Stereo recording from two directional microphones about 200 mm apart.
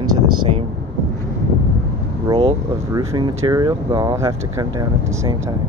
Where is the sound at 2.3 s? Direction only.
30° right (ahead or behind).